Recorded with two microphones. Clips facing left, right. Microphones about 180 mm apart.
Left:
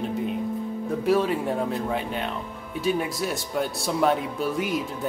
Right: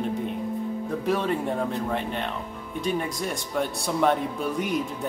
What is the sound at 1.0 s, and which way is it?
Speech, 10° left (ahead or behind).